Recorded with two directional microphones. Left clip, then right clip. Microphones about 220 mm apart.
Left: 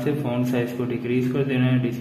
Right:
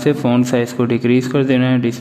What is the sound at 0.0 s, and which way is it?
A man's voice, 50° right (ahead or behind).